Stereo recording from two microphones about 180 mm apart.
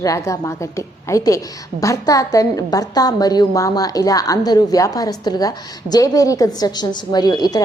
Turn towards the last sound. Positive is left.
turn(degrees=20)  # may be behind; listen again after turning